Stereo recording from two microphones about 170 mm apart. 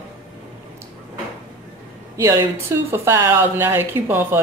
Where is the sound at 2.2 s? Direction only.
15° right (ahead or behind).